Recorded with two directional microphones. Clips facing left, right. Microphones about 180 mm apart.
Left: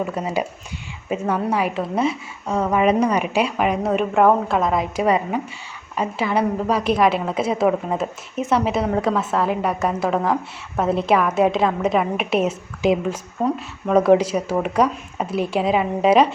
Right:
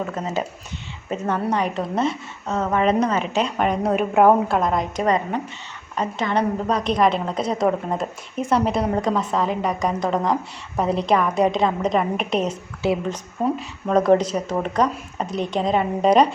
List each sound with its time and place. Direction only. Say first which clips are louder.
0.0 s a woman's voice: left 2 dB; 10° left (ahead or behind)